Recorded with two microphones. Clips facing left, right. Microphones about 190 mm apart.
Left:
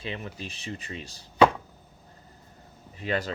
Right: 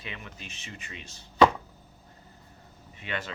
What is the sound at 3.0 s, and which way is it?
Speech, 35° left (ahead or behind).